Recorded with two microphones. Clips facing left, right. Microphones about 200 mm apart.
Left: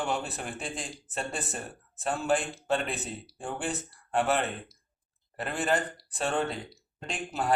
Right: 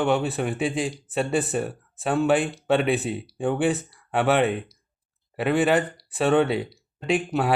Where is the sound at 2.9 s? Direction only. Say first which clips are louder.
Right 11 dB; centre (ahead or behind).